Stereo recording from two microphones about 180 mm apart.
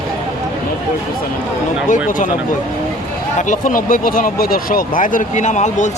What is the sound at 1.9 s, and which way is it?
Speech, 50° left (ahead or behind).